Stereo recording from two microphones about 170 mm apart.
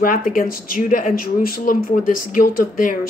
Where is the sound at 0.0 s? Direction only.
55° left (ahead or behind).